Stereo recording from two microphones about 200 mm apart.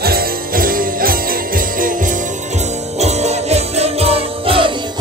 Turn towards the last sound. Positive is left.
turn(degrees=-25)  # may be behind; listen again after turning